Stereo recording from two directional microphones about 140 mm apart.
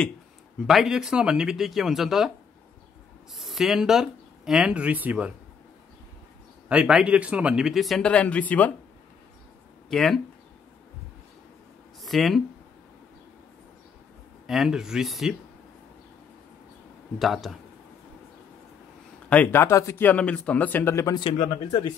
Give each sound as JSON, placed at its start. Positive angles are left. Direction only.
{"t": 0.7, "sound": "speech", "side_deg": -5}
{"t": 3.3, "sound": "speech", "side_deg": 0}
{"t": 6.7, "sound": "speech", "side_deg": -5}
{"t": 9.8, "sound": "speech", "side_deg": 0}
{"t": 12.0, "sound": "speech", "side_deg": 0}
{"t": 14.4, "sound": "speech", "side_deg": -5}
{"t": 17.2, "sound": "speech", "side_deg": 0}
{"t": 19.2, "sound": "speech", "side_deg": 10}